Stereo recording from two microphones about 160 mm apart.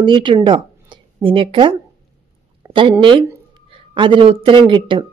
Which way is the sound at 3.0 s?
30° right (ahead or behind).